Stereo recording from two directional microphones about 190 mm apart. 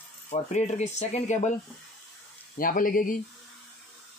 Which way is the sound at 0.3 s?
35° left (ahead or behind).